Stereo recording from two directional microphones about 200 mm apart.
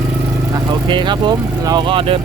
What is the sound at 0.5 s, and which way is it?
Speech, 25° right (ahead or behind).